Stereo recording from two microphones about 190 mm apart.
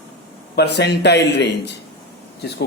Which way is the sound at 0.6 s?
60° left (ahead or behind).